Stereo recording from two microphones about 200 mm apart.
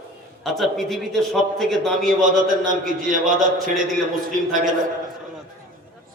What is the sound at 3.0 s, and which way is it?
Speech, 40° right (ahead or behind).